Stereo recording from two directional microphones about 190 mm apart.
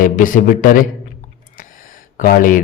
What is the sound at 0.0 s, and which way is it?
Speech, 45° left (ahead or behind).